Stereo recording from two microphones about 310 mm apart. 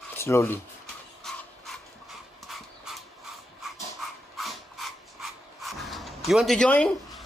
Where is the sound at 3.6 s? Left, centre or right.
Centre.